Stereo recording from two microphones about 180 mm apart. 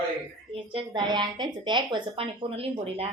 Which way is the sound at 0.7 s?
25° right (ahead or behind).